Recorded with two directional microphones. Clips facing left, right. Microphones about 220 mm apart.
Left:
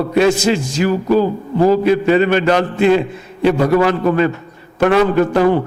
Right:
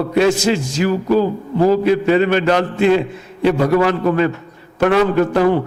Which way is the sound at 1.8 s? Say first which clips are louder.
Left 1 dB; 15° left (ahead or behind).